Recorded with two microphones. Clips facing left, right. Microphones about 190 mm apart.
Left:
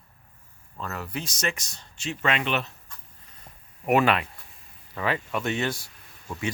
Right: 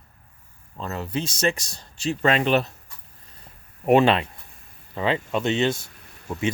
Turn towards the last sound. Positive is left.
turn(degrees=-20)  # may be behind; listen again after turning